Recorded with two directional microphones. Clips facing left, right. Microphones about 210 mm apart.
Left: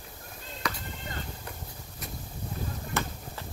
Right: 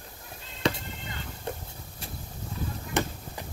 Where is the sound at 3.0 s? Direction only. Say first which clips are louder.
Right 5 dB; 20° right (ahead or behind).